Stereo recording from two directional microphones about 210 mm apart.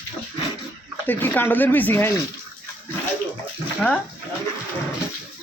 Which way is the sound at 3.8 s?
5° left (ahead or behind).